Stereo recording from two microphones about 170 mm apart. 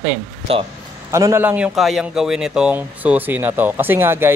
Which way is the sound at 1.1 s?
15° right (ahead or behind).